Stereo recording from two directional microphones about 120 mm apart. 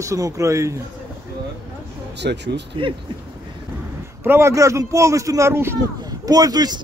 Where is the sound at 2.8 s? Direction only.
45° right (ahead or behind).